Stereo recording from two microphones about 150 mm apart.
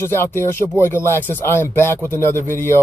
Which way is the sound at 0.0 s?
15° left (ahead or behind).